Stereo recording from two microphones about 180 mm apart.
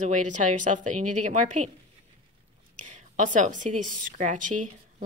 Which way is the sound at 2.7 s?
45° right (ahead or behind).